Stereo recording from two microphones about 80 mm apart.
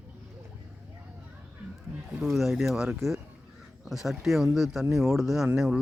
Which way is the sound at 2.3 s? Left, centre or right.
Centre.